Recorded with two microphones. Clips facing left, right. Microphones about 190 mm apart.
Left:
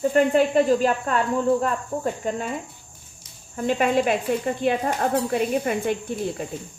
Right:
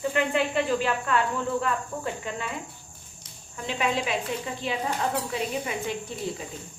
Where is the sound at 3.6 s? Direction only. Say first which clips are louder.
Left 7 dB; 50° left (ahead or behind).